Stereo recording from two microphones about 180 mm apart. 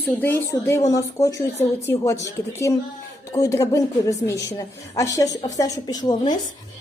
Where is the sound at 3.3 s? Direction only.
15° left (ahead or behind).